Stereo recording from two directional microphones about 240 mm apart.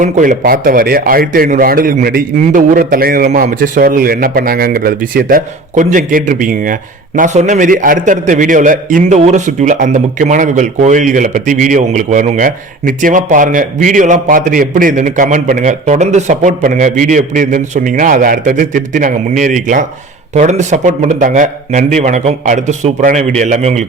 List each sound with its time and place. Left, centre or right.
0.0 s a man's voice: right